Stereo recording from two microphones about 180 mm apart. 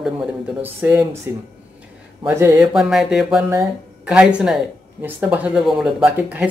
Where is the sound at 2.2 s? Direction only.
15° right (ahead or behind).